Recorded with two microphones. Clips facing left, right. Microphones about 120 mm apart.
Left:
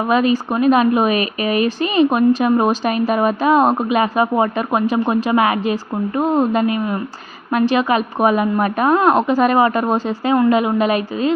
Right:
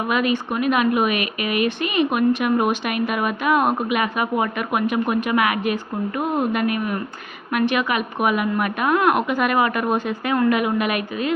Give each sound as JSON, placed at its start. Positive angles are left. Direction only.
{"t": 0.1, "sound": "a woman's voice", "side_deg": 35}